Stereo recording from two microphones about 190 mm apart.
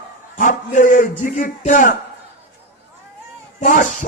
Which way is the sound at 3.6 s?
40° left (ahead or behind).